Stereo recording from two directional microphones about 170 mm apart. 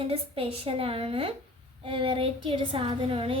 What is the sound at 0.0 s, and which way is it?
A woman's voice, 35° right (ahead or behind).